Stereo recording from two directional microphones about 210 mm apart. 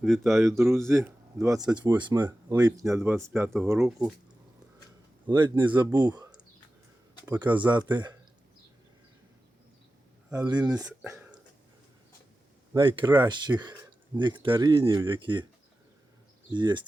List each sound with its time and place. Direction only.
0.0 s a man's voice: centre (ahead or behind)
0.4 s speech: 10° right (ahead or behind)
5.2 s speech: 20° right (ahead or behind)
7.3 s a man's voice: 20° right (ahead or behind)
10.3 s speech: 20° right (ahead or behind)
11.1 s whispering: 5° right (ahead or behind)
12.7 s speech: 25° right (ahead or behind)
14.8 s speech: 15° right (ahead or behind)
16.5 s speech: 20° right (ahead or behind)